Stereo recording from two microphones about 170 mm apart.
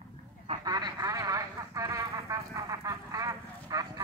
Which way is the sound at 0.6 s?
25° right (ahead or behind).